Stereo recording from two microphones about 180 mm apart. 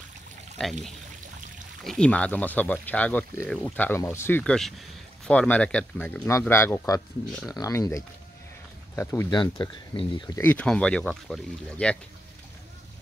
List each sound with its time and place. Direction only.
0.6 s speech: 5° left (ahead or behind)
1.9 s speech: 5° left (ahead or behind); by 10.4 s 25° left (ahead or behind)
10.4 s speech: 10° left (ahead or behind)